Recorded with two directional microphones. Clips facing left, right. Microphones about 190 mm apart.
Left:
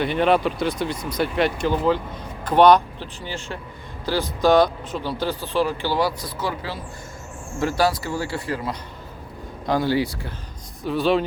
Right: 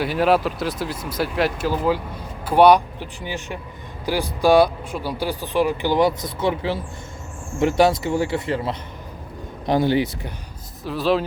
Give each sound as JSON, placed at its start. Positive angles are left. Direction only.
{"t": 0.0, "sound": "speech", "side_deg": -5}
{"t": 10.8, "sound": "speech", "side_deg": 0}